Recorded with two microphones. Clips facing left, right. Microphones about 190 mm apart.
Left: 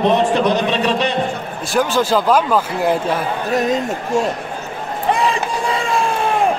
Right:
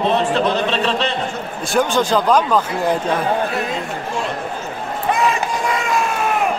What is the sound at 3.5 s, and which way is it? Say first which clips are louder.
Speech: left 6 dB; 40° left (ahead or behind).